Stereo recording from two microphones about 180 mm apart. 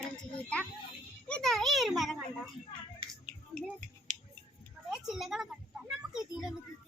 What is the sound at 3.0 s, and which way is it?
Child singing, 30° right (ahead or behind).